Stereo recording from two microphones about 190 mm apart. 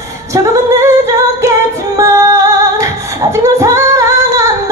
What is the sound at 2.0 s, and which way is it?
Female singing, 15° right (ahead or behind).